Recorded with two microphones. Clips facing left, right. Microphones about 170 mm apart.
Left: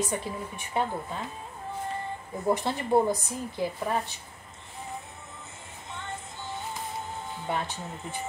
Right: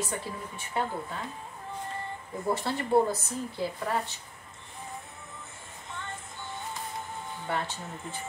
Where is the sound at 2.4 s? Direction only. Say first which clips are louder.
Left 3 dB; 15° left (ahead or behind).